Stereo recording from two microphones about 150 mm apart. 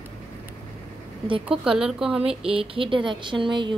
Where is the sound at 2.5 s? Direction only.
35° right (ahead or behind).